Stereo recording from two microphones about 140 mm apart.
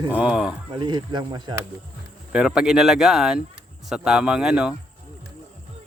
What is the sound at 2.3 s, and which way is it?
Speech, 5° right (ahead or behind).